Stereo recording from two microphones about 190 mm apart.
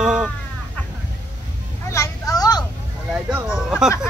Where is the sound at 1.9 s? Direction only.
15° left (ahead or behind).